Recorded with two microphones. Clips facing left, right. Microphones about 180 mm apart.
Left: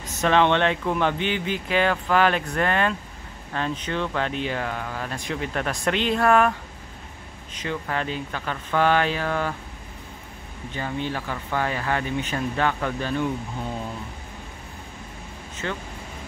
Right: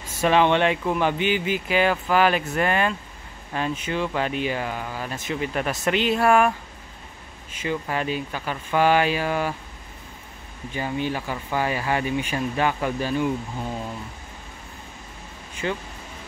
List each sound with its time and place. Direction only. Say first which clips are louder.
0.2 s speech: right 1 dB; 10° right (ahead or behind)
7.5 s speech: right 2 dB; 10° right (ahead or behind)
10.7 s speech: right 2 dB; 10° right (ahead or behind)
15.6 s speech: right 3 dB; 15° right (ahead or behind)